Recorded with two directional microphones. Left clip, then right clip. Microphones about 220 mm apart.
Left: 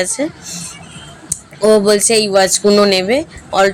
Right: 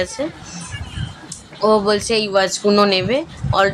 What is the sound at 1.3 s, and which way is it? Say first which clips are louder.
Speech: left 4 dB; 20° left (ahead or behind).